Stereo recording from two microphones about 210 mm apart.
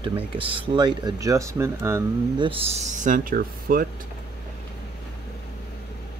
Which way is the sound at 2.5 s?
30° right (ahead or behind).